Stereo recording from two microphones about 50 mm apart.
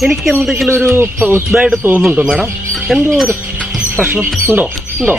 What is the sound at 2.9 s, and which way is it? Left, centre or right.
Speech, centre.